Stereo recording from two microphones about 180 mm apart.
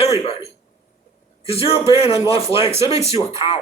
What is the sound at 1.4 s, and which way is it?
A man's voice, 35° left (ahead or behind).